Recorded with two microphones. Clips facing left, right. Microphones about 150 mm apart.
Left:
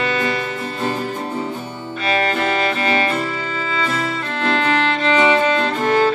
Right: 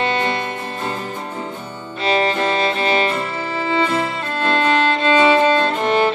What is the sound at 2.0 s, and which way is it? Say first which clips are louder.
Music: right 2 dB; 25° right (ahead or behind).